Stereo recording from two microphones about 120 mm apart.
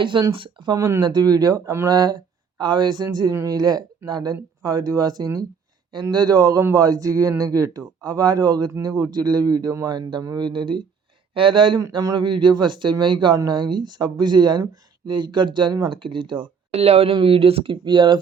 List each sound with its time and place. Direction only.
0.0 s speech: 40° right (ahead or behind)
0.8 s speech: 25° right (ahead or behind)
1.0 s speech: 35° right (ahead or behind)
11.8 s speech: 35° right (ahead or behind)